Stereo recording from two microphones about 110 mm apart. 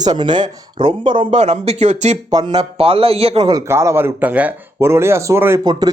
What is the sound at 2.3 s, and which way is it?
Speech, 40° right (ahead or behind).